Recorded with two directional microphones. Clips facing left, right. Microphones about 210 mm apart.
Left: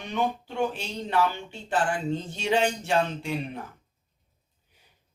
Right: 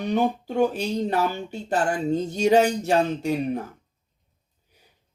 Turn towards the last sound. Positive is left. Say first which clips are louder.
# right 7 dB
turn(degrees=-40)  # may be behind; listen again after turning